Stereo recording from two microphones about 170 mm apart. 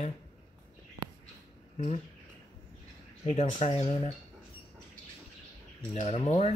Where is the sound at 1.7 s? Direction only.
45° left (ahead or behind).